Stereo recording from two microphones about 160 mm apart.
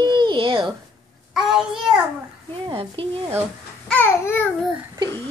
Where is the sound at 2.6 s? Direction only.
35° right (ahead or behind).